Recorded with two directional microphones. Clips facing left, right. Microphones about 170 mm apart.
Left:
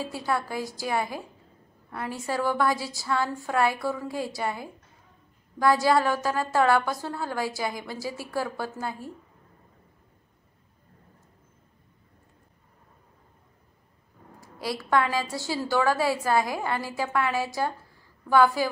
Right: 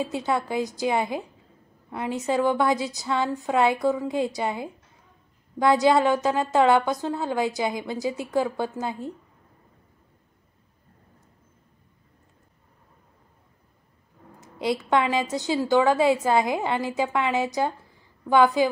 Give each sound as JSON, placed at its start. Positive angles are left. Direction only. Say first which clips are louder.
{"t": 0.0, "sound": "a woman's voice", "louder": "right 3 dB", "side_deg": -20}
{"t": 14.4, "sound": "a woman's voice", "louder": "right 6 dB", "side_deg": -20}